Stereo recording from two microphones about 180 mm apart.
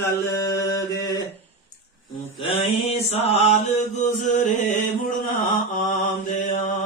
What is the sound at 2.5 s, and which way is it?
Mantra, 35° left (ahead or behind).